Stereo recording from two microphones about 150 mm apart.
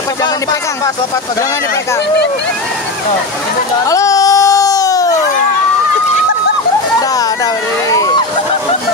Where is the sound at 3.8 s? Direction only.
20° left (ahead or behind).